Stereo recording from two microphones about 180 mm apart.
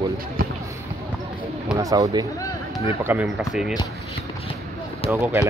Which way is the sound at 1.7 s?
20° right (ahead or behind).